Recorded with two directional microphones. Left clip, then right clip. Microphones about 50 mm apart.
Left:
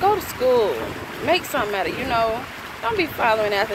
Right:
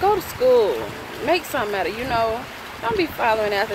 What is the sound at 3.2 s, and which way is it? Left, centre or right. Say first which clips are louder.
Speech: left 1 dB; right.